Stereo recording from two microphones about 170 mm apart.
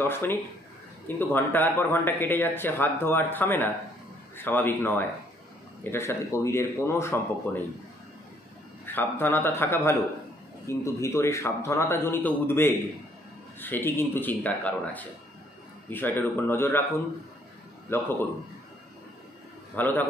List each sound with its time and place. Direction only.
0.0 s speech: 15° left (ahead or behind)
8.8 s speech: 10° left (ahead or behind)
17.9 s speech: 15° left (ahead or behind)
19.7 s speech: 10° left (ahead or behind)